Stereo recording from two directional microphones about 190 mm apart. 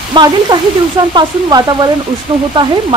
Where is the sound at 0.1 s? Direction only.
25° right (ahead or behind).